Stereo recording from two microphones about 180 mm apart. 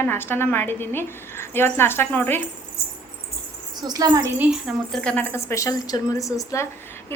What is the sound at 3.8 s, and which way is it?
Speech, 20° right (ahead or behind).